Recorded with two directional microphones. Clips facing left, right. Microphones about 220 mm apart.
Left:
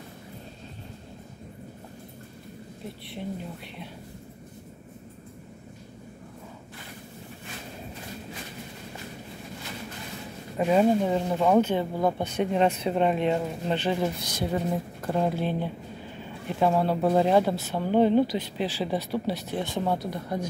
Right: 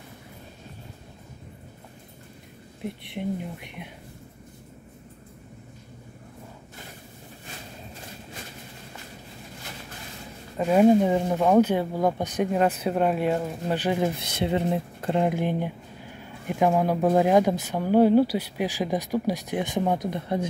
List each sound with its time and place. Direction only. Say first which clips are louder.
10.8 s speech: right 6 dB; 15° right (ahead or behind)
14.3 s speech: right 3 dB; 25° right (ahead or behind)